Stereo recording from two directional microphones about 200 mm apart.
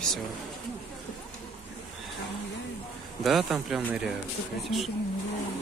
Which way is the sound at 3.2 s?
Centre (ahead or behind).